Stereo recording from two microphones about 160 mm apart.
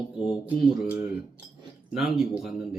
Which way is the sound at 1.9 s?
Centre (ahead or behind).